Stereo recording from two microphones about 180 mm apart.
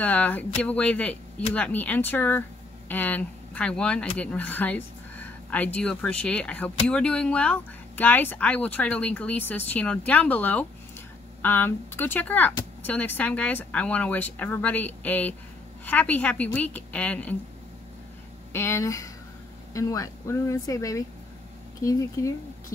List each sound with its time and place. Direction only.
0.0 s speech: 10° left (ahead or behind)
18.5 s speech: 15° left (ahead or behind)